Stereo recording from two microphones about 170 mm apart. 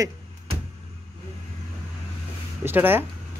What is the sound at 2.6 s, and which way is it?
Speech, 10° right (ahead or behind).